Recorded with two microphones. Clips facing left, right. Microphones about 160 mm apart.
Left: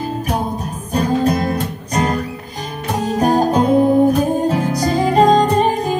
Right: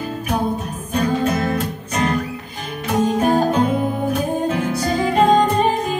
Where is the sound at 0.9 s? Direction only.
35° left (ahead or behind).